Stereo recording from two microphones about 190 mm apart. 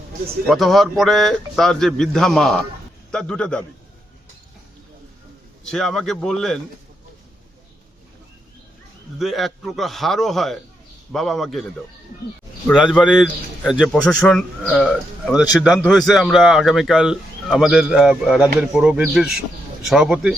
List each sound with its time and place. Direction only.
0.4 s a man's voice: centre (ahead or behind)
5.6 s a man's voice: centre (ahead or behind)
9.1 s a man's voice: centre (ahead or behind)
12.7 s a man's voice: centre (ahead or behind)